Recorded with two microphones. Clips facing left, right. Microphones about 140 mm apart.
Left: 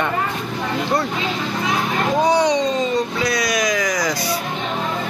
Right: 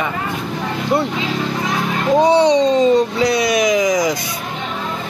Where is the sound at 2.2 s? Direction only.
30° right (ahead or behind).